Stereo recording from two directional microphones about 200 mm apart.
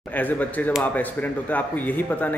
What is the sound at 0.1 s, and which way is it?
Speech, 10° left (ahead or behind).